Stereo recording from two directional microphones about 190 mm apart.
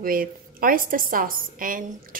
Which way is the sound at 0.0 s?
50° right (ahead or behind).